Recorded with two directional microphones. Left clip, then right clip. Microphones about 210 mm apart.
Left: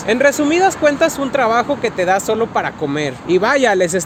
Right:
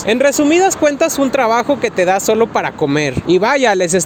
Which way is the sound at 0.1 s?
40° right (ahead or behind).